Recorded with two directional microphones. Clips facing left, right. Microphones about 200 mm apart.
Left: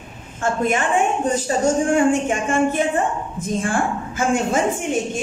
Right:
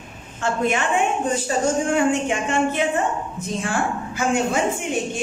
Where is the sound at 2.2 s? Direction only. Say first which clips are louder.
Left 2 dB; 50° left (ahead or behind).